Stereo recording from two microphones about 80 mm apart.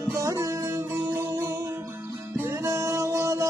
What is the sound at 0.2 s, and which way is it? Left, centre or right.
Music, right.